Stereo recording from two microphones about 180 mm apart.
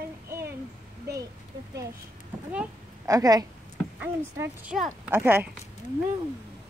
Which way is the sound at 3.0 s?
20° right (ahead or behind).